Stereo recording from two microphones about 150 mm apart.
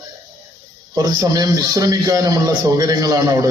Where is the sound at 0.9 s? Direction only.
25° right (ahead or behind).